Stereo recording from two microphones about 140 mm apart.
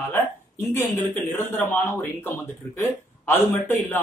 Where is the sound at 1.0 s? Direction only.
15° left (ahead or behind).